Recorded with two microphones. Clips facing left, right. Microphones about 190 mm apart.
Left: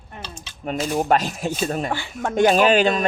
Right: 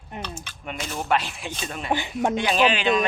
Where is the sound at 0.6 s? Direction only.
40° left (ahead or behind).